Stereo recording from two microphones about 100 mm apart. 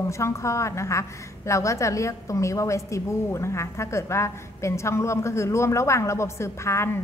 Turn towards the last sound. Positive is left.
turn(degrees=25)  # may be behind; listen again after turning